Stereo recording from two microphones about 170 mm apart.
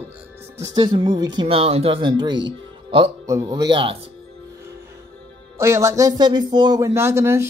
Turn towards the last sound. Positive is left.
turn(degrees=-15)  # may be behind; listen again after turning